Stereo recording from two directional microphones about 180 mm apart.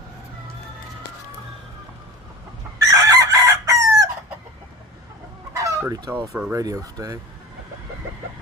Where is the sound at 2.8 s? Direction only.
20° right (ahead or behind).